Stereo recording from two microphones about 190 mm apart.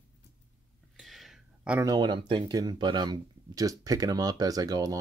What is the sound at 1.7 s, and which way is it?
Speech, 20° right (ahead or behind).